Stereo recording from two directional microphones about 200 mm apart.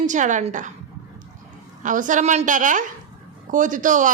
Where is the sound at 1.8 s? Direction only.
40° right (ahead or behind).